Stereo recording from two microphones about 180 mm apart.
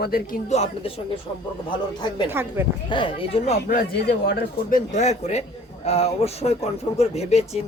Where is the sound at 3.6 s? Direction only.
60° left (ahead or behind).